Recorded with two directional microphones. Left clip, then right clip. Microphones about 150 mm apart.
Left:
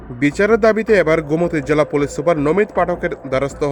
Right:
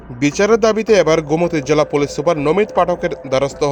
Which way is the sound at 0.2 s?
20° right (ahead or behind).